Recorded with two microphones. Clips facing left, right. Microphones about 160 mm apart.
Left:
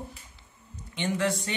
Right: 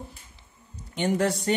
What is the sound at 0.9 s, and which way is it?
Speech, 40° right (ahead or behind).